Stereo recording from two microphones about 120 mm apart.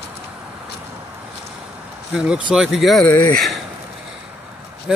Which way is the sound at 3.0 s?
15° left (ahead or behind).